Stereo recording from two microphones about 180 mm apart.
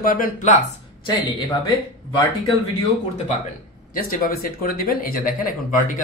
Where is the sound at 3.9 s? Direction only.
55° left (ahead or behind).